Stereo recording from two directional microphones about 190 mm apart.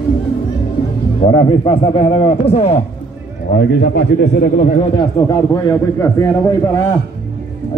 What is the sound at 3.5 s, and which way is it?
Speech, 55° left (ahead or behind).